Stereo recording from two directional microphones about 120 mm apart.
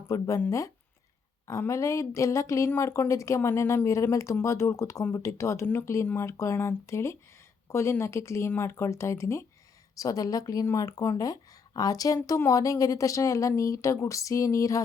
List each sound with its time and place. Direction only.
0.1 s speech: 25° left (ahead or behind)
1.5 s speech: 25° left (ahead or behind)